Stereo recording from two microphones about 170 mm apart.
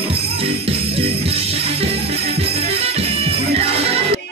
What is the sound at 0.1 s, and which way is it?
Jingle bell, 35° right (ahead or behind).